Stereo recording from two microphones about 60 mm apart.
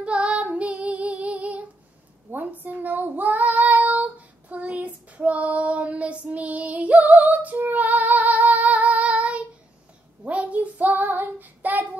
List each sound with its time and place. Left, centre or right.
0.0 s child singing: centre